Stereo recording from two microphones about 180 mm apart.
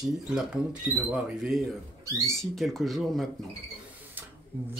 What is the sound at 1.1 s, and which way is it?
Speech, centre (ahead or behind).